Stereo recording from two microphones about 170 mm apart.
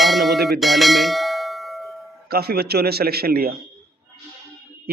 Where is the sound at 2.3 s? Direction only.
65° right (ahead or behind).